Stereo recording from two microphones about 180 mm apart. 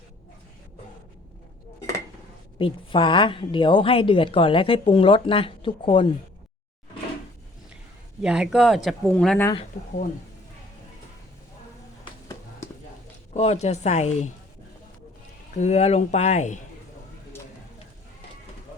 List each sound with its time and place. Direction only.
2.6 s a woman's voice: 30° left (ahead or behind)
8.2 s speech: 5° right (ahead or behind)
9.7 s speech: 45° left (ahead or behind)
13.3 s speech: 35° left (ahead or behind)
15.5 s speech: 40° left (ahead or behind)